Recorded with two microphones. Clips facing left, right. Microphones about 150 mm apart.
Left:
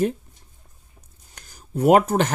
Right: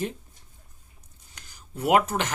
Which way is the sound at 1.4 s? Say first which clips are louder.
Left 9 dB; 45° left (ahead or behind).